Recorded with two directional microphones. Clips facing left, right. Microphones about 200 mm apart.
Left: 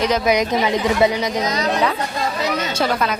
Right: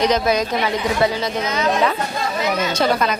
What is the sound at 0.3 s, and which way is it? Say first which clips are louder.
Speech: left 2 dB; 20° left (ahead or behind).